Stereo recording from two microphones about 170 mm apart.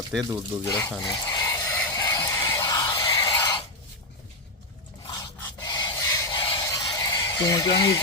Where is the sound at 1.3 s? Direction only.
20° left (ahead or behind).